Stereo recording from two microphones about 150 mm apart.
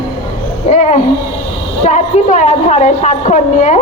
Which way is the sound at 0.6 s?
50° left (ahead or behind).